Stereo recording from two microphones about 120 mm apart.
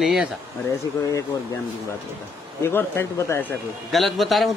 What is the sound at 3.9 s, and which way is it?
Speech, centre (ahead or behind).